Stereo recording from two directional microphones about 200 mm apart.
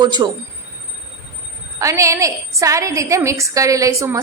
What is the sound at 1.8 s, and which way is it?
A woman's voice, 15° right (ahead or behind).